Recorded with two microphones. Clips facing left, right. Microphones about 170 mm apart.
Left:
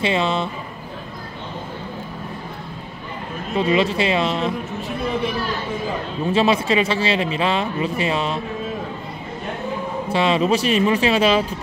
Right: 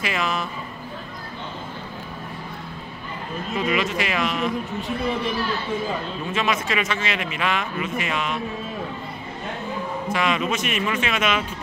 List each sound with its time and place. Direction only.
0.0 s speech: 30° left (ahead or behind)
3.5 s speech: 30° left (ahead or behind)
6.3 s speech: 30° left (ahead or behind)
10.0 s speech: 30° left (ahead or behind)